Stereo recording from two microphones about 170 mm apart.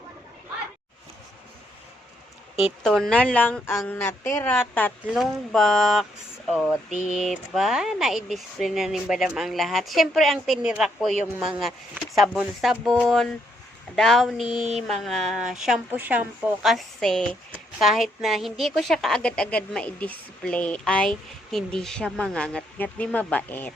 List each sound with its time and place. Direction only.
2.8 s a woman's voice: 5° left (ahead or behind)
5.1 s a woman's voice: centre (ahead or behind)